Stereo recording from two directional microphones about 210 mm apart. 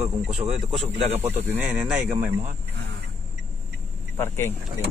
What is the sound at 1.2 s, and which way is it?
Speech, 5° right (ahead or behind).